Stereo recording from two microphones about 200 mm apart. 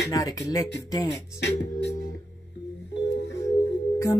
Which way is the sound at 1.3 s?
55° left (ahead or behind).